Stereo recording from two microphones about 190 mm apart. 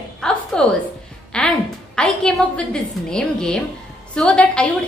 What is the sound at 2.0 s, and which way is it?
A woman's voice, 5° left (ahead or behind).